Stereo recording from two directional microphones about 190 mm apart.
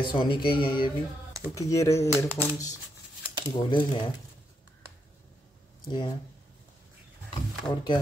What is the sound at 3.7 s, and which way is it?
Speech, 25° left (ahead or behind).